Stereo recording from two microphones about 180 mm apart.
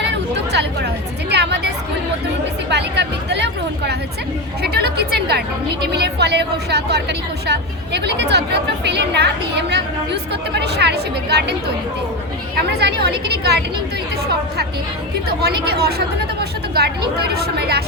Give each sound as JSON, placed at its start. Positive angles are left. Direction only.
{"t": 0.0, "sound": "chatter", "side_deg": -75}
{"t": 1.3, "sound": "a sound", "side_deg": -70}
{"t": 4.6, "sound": "chatter", "side_deg": -65}
{"t": 5.8, "sound": "a woman's voice", "side_deg": -65}
{"t": 12.5, "sound": "a woman's voice", "side_deg": -65}
{"t": 15.3, "sound": "a woman's voice", "side_deg": -60}